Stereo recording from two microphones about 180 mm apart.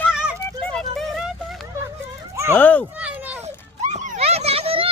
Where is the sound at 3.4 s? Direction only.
40° right (ahead or behind).